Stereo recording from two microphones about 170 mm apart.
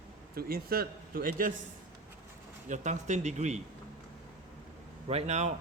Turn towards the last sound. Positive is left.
turn(degrees=-40)  # may be behind; listen again after turning